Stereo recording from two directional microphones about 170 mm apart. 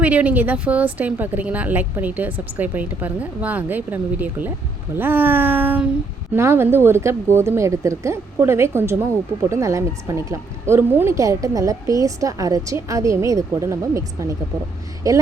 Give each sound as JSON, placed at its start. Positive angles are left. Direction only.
{"t": 0.0, "sound": "speech", "side_deg": -10}